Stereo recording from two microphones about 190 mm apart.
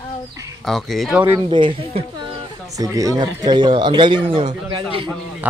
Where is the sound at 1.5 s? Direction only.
25° right (ahead or behind).